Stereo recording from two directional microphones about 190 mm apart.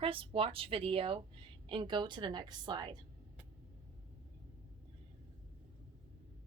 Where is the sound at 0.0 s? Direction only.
30° right (ahead or behind).